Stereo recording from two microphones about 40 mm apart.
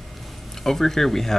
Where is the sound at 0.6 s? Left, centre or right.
Centre.